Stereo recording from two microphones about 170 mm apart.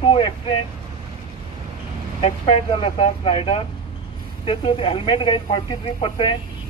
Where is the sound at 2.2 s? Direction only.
35° left (ahead or behind).